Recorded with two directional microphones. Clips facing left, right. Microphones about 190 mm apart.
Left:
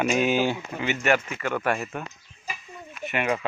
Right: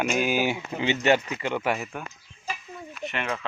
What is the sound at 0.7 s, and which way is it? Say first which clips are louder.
Speech: right 4 dB; 20° right (ahead or behind).